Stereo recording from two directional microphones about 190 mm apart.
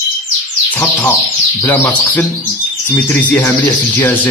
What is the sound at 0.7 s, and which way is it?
Speech, 10° left (ahead or behind).